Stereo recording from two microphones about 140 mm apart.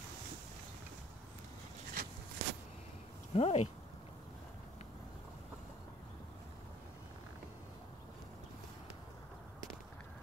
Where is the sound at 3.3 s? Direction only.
50° left (ahead or behind).